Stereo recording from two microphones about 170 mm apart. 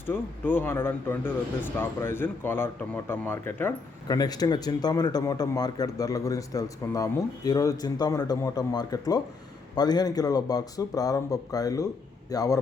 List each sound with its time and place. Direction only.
0.0 s speech: 10° left (ahead or behind)